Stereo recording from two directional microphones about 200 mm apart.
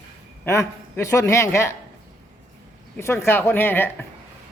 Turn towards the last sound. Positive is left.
turn(degrees=10)  # may be behind; listen again after turning